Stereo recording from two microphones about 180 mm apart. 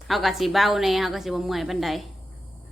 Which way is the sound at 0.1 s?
Centre (ahead or behind).